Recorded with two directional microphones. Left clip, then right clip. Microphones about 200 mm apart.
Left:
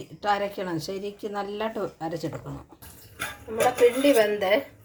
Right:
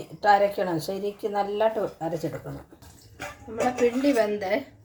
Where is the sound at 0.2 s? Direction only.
30° left (ahead or behind).